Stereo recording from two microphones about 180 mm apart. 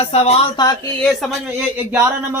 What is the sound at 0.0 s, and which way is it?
Speech, 35° left (ahead or behind).